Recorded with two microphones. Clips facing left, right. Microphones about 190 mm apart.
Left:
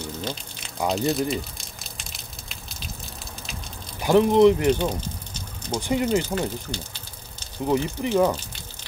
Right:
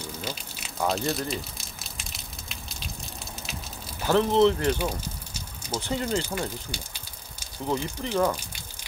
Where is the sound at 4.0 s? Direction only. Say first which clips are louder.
Left 4 dB; 15° left (ahead or behind).